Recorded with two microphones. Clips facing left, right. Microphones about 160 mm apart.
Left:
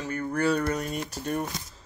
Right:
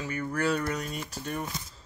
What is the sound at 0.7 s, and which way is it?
Speech, 40° left (ahead or behind).